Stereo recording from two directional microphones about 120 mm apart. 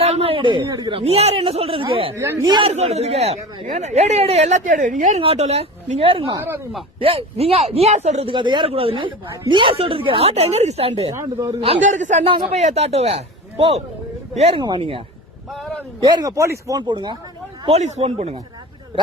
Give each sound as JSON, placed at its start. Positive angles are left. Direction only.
{"t": 0.0, "sound": "a sound", "side_deg": -55}
{"t": 0.9, "sound": "speech", "side_deg": -55}
{"t": 2.1, "sound": "speech", "side_deg": -25}
{"t": 2.5, "sound": "speech", "side_deg": -40}
{"t": 2.7, "sound": "speech", "side_deg": -60}
{"t": 5.2, "sound": "a woman's voice", "side_deg": -60}
{"t": 8.3, "sound": "a woman's voice", "side_deg": -40}
{"t": 11.1, "sound": "speech", "side_deg": -25}
{"t": 11.8, "sound": "speech", "side_deg": -90}
{"t": 12.2, "sound": "a woman's voice", "side_deg": -55}
{"t": 15.4, "sound": "a sound", "side_deg": 0}
{"t": 16.0, "sound": "speech", "side_deg": -40}
{"t": 16.7, "sound": "speech", "side_deg": -35}
{"t": 17.7, "sound": "a woman's voice", "side_deg": -65}